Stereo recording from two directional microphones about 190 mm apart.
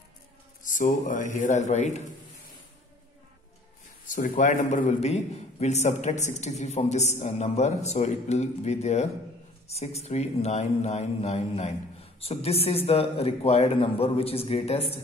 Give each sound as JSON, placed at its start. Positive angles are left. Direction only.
{"t": 0.7, "sound": "speech", "side_deg": 45}
{"t": 4.1, "sound": "a man's voice", "side_deg": 40}